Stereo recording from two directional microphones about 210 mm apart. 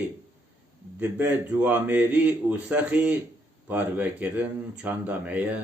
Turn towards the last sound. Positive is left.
turn(degrees=-5)  # may be behind; listen again after turning